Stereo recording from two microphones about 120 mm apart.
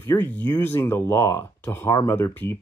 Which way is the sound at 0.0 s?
20° left (ahead or behind).